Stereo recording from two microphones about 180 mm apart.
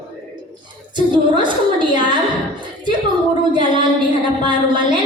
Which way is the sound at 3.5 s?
25° right (ahead or behind).